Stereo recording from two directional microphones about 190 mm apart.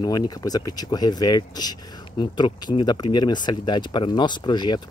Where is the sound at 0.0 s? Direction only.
20° left (ahead or behind).